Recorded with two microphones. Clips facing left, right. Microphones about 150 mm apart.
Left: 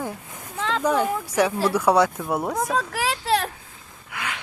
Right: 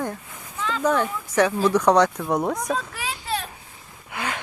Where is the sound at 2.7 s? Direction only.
85° left.